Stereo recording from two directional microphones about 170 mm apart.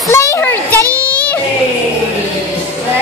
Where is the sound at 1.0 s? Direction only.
10° left (ahead or behind).